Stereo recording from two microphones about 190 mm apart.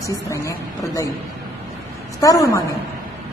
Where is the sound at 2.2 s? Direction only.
15° left (ahead or behind).